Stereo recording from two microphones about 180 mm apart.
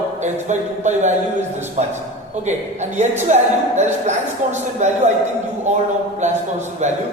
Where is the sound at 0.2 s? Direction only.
40° right (ahead or behind).